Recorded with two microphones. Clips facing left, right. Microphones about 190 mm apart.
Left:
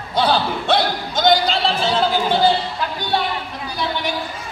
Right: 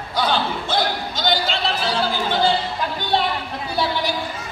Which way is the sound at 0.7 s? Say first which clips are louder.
Left 5 dB; 45° left (ahead or behind).